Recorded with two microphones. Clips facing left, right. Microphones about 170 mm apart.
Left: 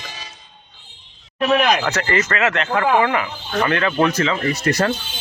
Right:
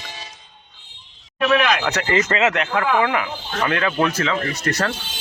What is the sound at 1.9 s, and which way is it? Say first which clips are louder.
Speech: right 1 dB; 15° right (ahead or behind).